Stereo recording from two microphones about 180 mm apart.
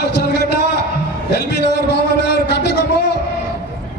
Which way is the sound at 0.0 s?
65° left (ahead or behind).